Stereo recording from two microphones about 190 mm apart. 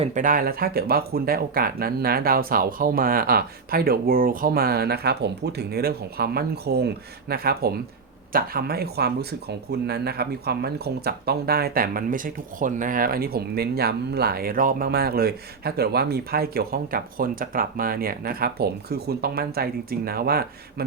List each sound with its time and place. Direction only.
0.0 s speech: 40° right (ahead or behind)